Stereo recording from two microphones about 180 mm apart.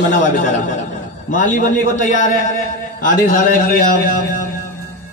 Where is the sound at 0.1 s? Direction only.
45° left (ahead or behind).